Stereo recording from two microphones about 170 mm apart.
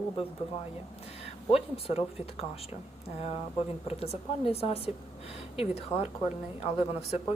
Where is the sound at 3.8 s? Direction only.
35° left (ahead or behind).